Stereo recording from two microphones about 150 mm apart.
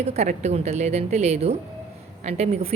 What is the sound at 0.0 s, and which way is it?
A woman's voice, 45° right (ahead or behind).